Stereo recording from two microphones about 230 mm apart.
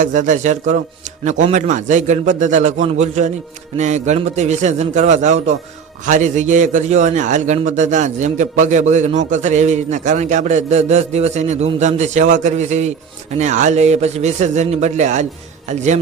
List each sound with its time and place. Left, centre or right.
0.0 s a man's voice: right